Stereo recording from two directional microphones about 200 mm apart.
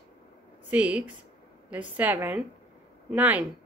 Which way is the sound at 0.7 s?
5° right (ahead or behind).